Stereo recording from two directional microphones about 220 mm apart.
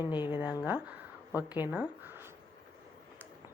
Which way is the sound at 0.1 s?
20° left (ahead or behind).